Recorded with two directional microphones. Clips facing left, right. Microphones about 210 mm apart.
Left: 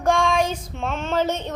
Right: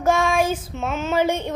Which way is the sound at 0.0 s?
5° right (ahead or behind).